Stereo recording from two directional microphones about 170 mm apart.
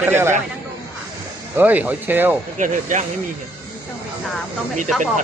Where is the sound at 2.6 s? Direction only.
45° right (ahead or behind).